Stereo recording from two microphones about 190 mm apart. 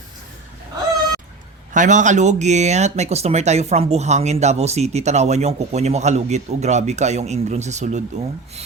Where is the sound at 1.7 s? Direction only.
40° right (ahead or behind).